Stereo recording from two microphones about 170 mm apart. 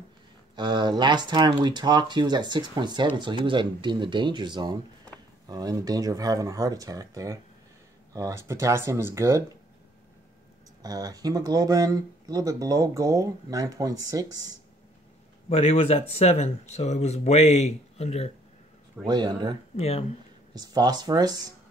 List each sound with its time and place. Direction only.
0.6 s speech: 25° right (ahead or behind)
10.8 s speech: 20° right (ahead or behind)
15.5 s speech: 35° left (ahead or behind)
19.0 s speech: 25° right (ahead or behind)
19.8 s speech: 40° left (ahead or behind)
20.5 s speech: 25° right (ahead or behind)